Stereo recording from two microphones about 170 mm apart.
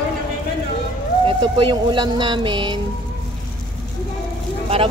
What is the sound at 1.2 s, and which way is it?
A woman's voice, 30° right (ahead or behind).